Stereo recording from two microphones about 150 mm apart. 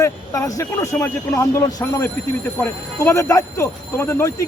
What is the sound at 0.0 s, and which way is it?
Speech, 25° left (ahead or behind).